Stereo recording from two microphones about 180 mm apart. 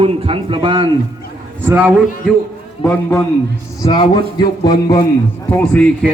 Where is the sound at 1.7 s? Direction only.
10° right (ahead or behind).